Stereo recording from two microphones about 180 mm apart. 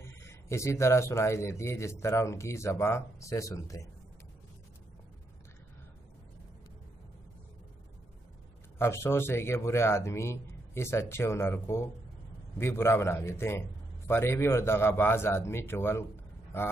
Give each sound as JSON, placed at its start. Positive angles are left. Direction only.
{"t": 0.0, "sound": "speech", "side_deg": 15}
{"t": 8.7, "sound": "speech", "side_deg": 15}